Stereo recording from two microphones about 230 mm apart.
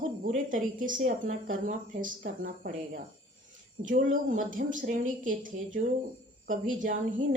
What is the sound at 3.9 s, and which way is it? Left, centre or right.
A woman's voice, right.